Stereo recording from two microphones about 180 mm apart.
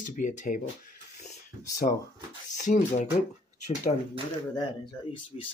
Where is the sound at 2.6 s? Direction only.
45° left (ahead or behind).